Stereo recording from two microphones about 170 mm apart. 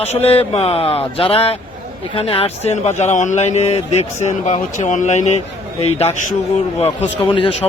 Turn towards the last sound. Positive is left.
turn(degrees=35)  # may be behind; listen again after turning